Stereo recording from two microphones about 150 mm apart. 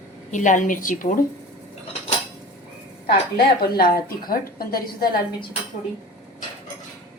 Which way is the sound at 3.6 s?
85° left.